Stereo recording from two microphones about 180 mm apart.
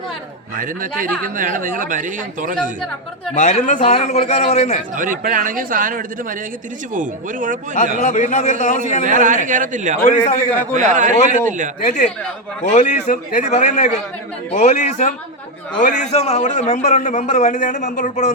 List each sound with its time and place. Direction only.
0.5 s speech: 50° right (ahead or behind)
3.3 s a man's voice: 45° left (ahead or behind)
4.9 s speech: 50° right (ahead or behind)
8.0 s a man's voice: 45° left (ahead or behind)
9.0 s speech: 45° right (ahead or behind)
10.0 s a man's voice: 45° left (ahead or behind)
10.8 s speech: 45° right (ahead or behind)
11.9 s a man's voice: 40° left (ahead or behind)